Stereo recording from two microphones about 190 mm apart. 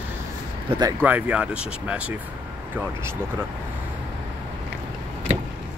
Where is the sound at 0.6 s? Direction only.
20° right (ahead or behind).